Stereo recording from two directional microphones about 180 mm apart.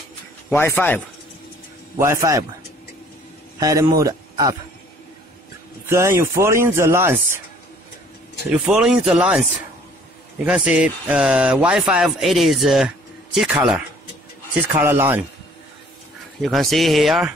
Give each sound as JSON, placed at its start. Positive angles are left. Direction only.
{"t": 0.5, "sound": "speech", "side_deg": 10}
{"t": 2.0, "sound": "speech", "side_deg": -15}
{"t": 3.5, "sound": "a man's voice", "side_deg": -20}
{"t": 5.9, "sound": "speech", "side_deg": -15}
{"t": 8.5, "sound": "speech", "side_deg": -5}
{"t": 10.4, "sound": "speech", "side_deg": -5}
{"t": 16.3, "sound": "speech", "side_deg": 0}